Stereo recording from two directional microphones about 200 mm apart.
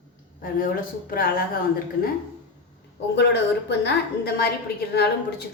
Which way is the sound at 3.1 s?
55° left (ahead or behind).